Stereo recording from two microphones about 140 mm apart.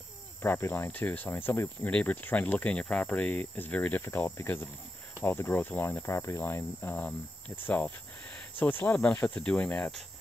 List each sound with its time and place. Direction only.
0.4 s cricket: 15° left (ahead or behind)